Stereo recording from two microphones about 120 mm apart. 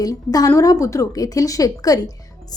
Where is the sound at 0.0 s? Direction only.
30° left (ahead or behind).